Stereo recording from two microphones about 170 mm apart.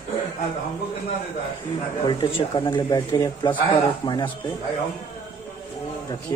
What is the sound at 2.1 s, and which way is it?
Speech, 30° left (ahead or behind).